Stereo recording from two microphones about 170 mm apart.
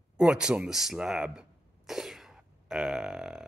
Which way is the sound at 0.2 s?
5° right (ahead or behind).